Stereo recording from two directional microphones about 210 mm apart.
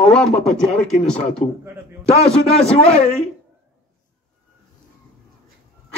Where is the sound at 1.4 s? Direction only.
35° left (ahead or behind).